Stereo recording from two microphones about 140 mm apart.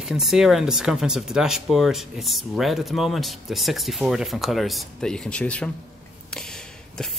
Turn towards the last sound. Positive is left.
turn(degrees=5)  # may be behind; listen again after turning